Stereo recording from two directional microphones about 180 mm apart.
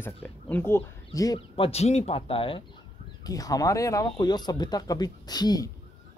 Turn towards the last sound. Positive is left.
turn(degrees=20)  # may be behind; listen again after turning